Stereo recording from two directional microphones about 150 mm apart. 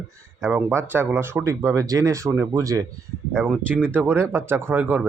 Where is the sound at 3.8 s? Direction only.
15° right (ahead or behind).